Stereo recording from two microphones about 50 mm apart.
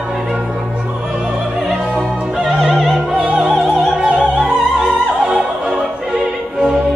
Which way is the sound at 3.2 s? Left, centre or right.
Right.